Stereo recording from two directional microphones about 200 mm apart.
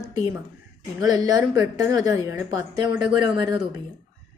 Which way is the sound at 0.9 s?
20° right (ahead or behind).